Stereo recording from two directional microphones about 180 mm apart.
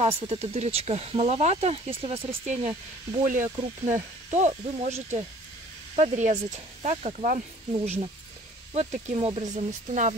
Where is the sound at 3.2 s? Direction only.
45° right (ahead or behind).